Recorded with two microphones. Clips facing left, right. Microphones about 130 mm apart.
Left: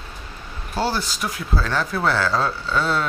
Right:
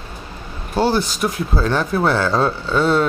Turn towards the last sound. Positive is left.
turn(degrees=-25)  # may be behind; listen again after turning